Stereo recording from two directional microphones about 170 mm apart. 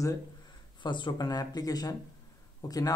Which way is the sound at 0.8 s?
25° left (ahead or behind).